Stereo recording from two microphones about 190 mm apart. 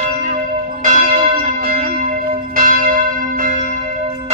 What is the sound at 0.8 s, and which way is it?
Church bell, 40° right (ahead or behind).